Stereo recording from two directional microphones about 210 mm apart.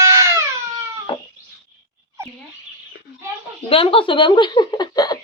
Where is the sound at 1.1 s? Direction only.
25° left (ahead or behind).